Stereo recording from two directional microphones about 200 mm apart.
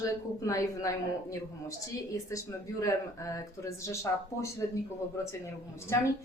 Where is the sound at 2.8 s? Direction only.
15° left (ahead or behind).